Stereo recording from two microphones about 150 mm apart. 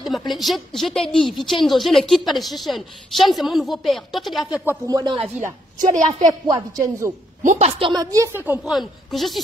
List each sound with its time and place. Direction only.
0.3 s a woman's voice: centre (ahead or behind)
4.6 s a woman's voice: 25° right (ahead or behind)
5.4 s a woman's voice: 55° right (ahead or behind)
6.1 s a woman's voice: 25° right (ahead or behind)
7.4 s a woman's voice: 50° right (ahead or behind)
7.8 s a woman's voice: 25° right (ahead or behind)
8.7 s a woman's voice: centre (ahead or behind)